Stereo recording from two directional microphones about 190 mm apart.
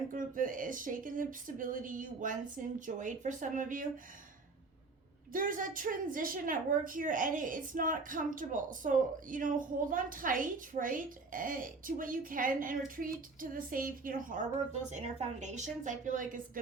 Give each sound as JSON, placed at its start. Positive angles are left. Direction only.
{"t": 0.1, "sound": "a woman's voice", "side_deg": -45}
{"t": 5.3, "sound": "a woman's voice", "side_deg": -45}